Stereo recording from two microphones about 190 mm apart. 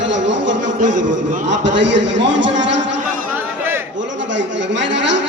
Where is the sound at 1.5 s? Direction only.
70° right (ahead or behind).